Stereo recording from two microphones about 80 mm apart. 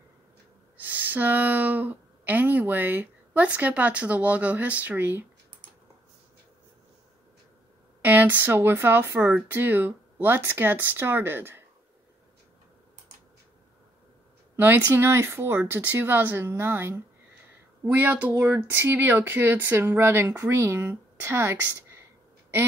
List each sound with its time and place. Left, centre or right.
0.7 s a woman's voice: right
8.0 s a woman's voice: right
14.6 s a woman's voice: right